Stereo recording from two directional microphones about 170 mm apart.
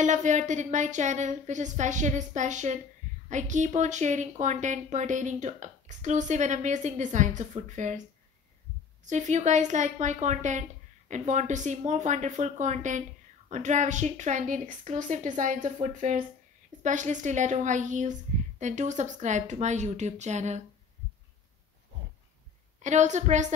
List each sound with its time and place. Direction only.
0.0 s a woman's voice: 45° right (ahead or behind)
9.0 s a woman's voice: 45° right (ahead or behind)
22.8 s a woman's voice: 45° right (ahead or behind)